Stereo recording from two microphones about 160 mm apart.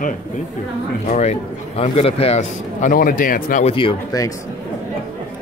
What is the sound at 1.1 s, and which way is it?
A man's voice, 45° left (ahead or behind).